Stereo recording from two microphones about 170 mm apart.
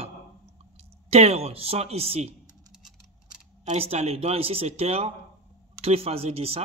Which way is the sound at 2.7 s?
5° right (ahead or behind).